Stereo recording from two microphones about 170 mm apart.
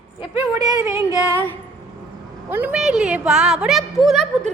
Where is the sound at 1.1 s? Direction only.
20° left (ahead or behind).